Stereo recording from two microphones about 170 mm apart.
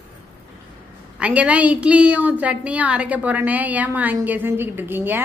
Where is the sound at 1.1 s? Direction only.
10° right (ahead or behind).